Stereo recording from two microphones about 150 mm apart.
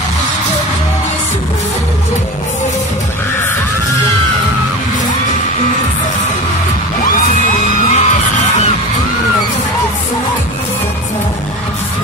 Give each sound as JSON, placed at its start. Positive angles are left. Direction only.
{"t": 7.9, "sound": "music", "side_deg": 50}